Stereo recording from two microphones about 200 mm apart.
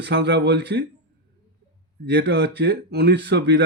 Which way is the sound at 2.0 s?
55° right (ahead or behind).